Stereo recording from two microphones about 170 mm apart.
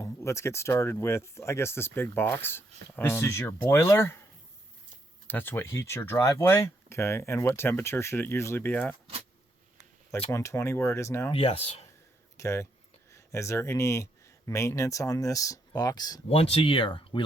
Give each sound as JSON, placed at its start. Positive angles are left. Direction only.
{"t": 0.0, "sound": "speech", "side_deg": 15}
{"t": 5.3, "sound": "speech", "side_deg": 10}
{"t": 10.3, "sound": "speech", "side_deg": 15}
{"t": 11.3, "sound": "speech", "side_deg": 35}
{"t": 12.4, "sound": "speech", "side_deg": 15}
{"t": 16.4, "sound": "speech", "side_deg": 35}